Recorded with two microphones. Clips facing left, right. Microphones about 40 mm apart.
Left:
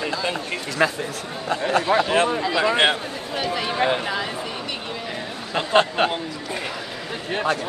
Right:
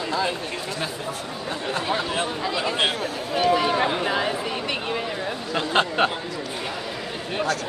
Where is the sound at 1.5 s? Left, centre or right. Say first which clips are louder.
Left 6 dB; left.